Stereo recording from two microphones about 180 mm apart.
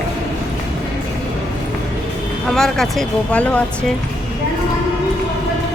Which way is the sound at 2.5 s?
Centre (ahead or behind).